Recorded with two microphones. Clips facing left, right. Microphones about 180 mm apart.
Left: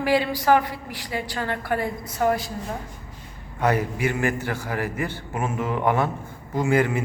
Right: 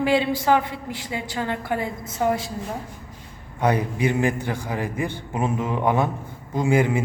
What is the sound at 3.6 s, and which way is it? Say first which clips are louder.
A man's voice: right 1 dB; 15° right (ahead or behind).